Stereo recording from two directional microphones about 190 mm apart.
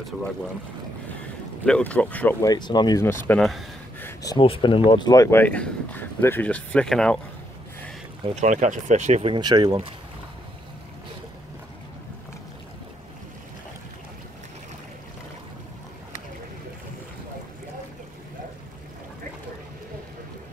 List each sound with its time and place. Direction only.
1.7 s speech: 5° left (ahead or behind)
4.0 s speech: 20° left (ahead or behind)
8.4 s speech: 40° right (ahead or behind)